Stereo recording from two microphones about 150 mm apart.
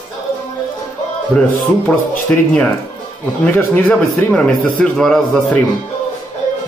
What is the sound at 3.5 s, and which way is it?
A man's voice, 10° left (ahead or behind).